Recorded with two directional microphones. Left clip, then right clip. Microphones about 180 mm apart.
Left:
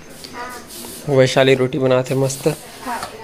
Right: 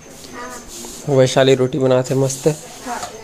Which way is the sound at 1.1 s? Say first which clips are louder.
Even; 10° right (ahead or behind).